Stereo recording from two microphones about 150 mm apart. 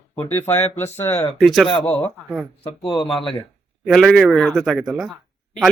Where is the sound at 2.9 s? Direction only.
30° left (ahead or behind).